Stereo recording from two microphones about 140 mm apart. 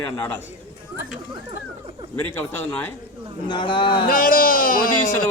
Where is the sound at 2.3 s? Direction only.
20° left (ahead or behind).